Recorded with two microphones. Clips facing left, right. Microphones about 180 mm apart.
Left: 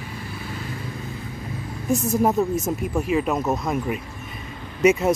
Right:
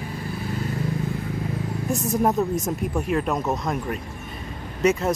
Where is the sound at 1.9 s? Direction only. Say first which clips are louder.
Left 2 dB; centre (ahead or behind).